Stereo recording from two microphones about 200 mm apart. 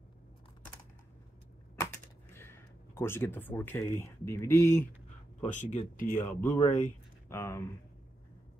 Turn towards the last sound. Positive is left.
turn(degrees=10)  # may be behind; listen again after turning